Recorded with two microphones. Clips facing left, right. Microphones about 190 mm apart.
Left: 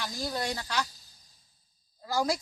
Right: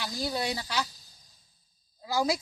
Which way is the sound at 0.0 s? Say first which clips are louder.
Right 2 dB; 10° right (ahead or behind).